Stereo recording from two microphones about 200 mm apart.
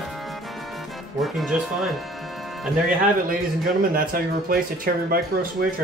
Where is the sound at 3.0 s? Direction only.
45° right (ahead or behind).